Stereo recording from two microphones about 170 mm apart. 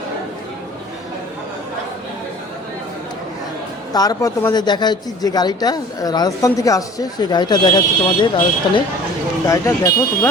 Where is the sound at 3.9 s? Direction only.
20° left (ahead or behind).